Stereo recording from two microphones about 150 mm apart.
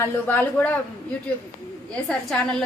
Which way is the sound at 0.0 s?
15° left (ahead or behind).